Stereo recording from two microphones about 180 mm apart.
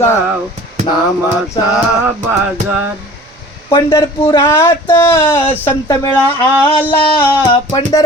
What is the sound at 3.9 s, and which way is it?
Speech, 20° left (ahead or behind).